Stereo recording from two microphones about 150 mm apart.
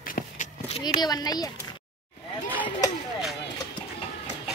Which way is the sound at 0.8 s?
25° left (ahead or behind).